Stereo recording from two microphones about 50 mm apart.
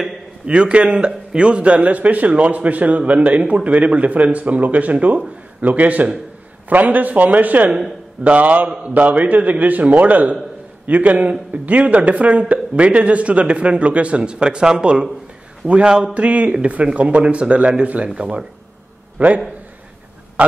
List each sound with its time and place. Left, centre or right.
0.5 s a man's voice: right